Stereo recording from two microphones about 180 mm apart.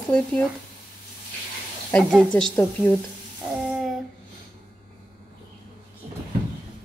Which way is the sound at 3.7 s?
Centre (ahead or behind).